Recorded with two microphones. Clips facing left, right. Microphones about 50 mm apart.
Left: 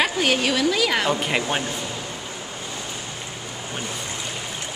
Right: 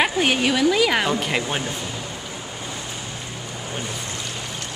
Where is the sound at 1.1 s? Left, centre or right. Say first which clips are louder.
Even; centre.